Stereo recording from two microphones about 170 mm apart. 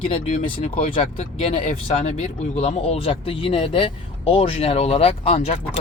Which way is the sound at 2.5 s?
35° left (ahead or behind).